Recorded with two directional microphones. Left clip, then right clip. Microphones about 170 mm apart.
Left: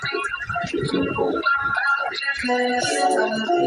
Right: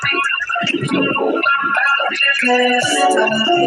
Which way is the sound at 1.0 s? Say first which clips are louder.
Right 6 dB; 20° right (ahead or behind).